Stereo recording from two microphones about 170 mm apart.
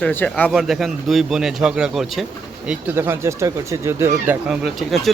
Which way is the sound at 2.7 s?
15° right (ahead or behind).